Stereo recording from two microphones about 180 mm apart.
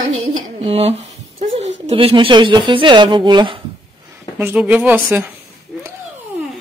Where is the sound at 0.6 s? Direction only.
35° right (ahead or behind).